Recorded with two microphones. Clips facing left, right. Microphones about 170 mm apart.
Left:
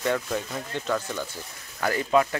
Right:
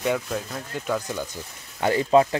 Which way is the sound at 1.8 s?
30° right (ahead or behind).